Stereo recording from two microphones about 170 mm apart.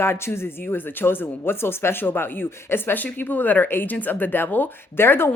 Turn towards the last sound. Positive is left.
turn(degrees=15)  # may be behind; listen again after turning